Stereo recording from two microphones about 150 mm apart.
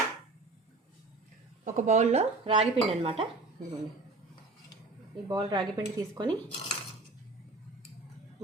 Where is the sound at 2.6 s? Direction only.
40° right (ahead or behind).